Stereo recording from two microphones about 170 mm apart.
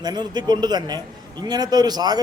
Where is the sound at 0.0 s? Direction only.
25° right (ahead or behind).